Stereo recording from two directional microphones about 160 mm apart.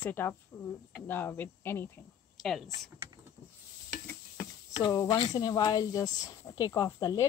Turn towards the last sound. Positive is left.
turn(degrees=25)  # may be behind; listen again after turning